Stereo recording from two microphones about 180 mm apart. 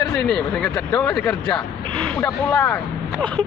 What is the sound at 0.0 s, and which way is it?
Speech, 5° left (ahead or behind).